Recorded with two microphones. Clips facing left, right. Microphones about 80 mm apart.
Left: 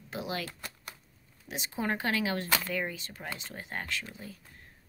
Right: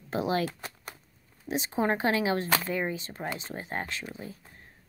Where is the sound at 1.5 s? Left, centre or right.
Right.